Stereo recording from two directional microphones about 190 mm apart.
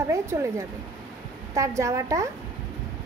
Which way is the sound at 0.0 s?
15° right (ahead or behind).